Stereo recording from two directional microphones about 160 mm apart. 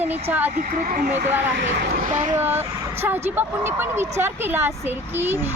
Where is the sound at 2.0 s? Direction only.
50° right (ahead or behind).